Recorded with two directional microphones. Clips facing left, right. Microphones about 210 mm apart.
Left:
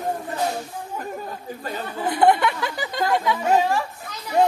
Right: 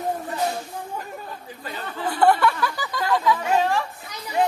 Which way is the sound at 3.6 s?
10° left (ahead or behind).